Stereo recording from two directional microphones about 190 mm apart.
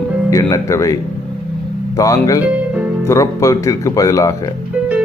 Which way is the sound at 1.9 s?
15° left (ahead or behind).